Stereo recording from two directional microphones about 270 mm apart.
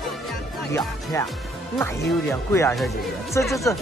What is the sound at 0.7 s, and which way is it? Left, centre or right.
Speech, centre.